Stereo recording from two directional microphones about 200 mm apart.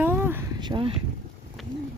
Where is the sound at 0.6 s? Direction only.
25° right (ahead or behind).